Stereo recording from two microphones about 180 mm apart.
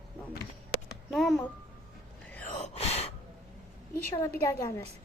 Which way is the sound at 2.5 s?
40° left (ahead or behind).